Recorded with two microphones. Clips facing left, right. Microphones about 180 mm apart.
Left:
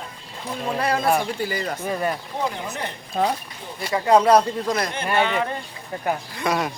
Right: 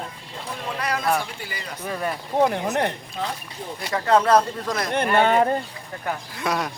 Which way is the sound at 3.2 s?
45° left (ahead or behind).